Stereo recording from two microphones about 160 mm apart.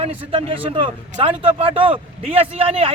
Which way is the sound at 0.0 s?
35° right (ahead or behind).